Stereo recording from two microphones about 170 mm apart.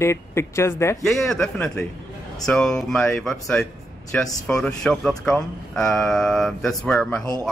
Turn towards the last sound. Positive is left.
turn(degrees=5)  # may be behind; listen again after turning